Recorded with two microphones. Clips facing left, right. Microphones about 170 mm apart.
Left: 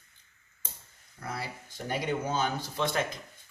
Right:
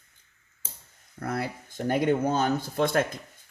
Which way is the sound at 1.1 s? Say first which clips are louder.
Right 7 dB; 55° right (ahead or behind).